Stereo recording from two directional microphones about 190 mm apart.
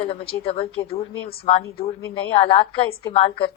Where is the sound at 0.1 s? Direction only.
30° left (ahead or behind).